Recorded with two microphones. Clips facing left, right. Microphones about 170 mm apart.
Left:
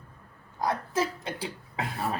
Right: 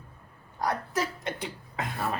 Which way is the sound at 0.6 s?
25° left (ahead or behind).